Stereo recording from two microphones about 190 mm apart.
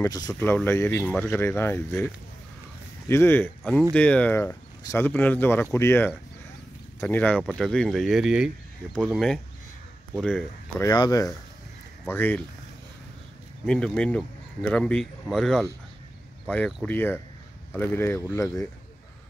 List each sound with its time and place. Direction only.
0.0 s speech: 20° left (ahead or behind)
3.1 s speech: 10° left (ahead or behind)
10.8 s speech: 20° left (ahead or behind)
13.7 s speech: 5° left (ahead or behind)